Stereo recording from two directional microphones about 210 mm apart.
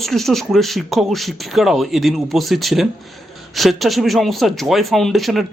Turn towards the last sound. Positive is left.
turn(degrees=0)  # may be behind; listen again after turning